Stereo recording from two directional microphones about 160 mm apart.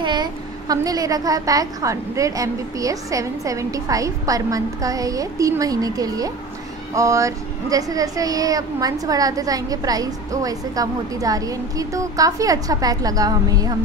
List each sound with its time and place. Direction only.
0.0 s speech: 30° right (ahead or behind)